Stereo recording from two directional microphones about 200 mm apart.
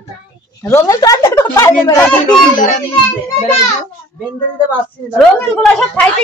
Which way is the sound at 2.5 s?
40° left (ahead or behind).